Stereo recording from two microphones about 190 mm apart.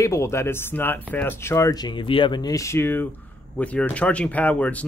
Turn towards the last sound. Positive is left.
turn(degrees=10)  # may be behind; listen again after turning